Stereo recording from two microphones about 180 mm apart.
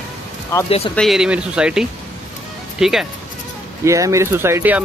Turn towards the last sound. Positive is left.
turn(degrees=-10)  # may be behind; listen again after turning